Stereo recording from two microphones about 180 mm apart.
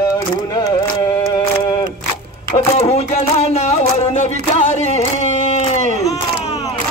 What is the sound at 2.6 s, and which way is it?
Music, 35° left (ahead or behind).